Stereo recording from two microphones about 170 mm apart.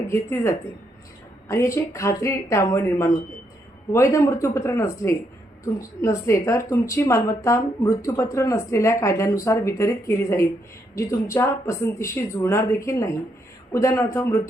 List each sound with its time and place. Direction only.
0.1 s speech: 15° left (ahead or behind)